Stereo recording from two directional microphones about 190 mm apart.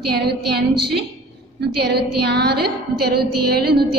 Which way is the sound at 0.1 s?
55° right (ahead or behind).